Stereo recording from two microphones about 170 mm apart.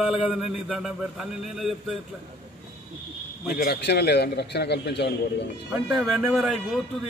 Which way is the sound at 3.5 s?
75° left (ahead or behind).